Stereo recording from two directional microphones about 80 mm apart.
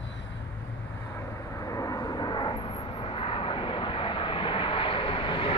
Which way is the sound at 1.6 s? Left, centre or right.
Left.